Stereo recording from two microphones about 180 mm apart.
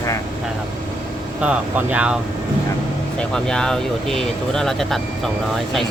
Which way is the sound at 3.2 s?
5° left (ahead or behind).